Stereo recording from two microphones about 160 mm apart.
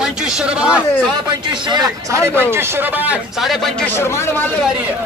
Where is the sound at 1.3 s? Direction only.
30° right (ahead or behind); by 4.4 s 15° left (ahead or behind).